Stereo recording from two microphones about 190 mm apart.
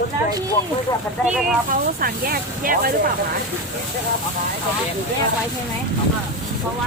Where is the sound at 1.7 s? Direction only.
50° right (ahead or behind).